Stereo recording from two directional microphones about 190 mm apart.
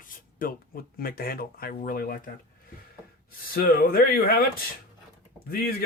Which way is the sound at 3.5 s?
50° left (ahead or behind).